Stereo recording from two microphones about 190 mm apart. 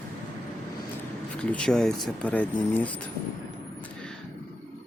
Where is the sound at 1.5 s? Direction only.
5° left (ahead or behind).